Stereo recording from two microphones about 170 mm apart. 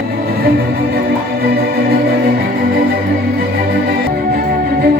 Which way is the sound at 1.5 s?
65° right (ahead or behind).